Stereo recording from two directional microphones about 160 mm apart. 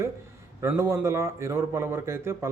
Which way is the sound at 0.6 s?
15° right (ahead or behind).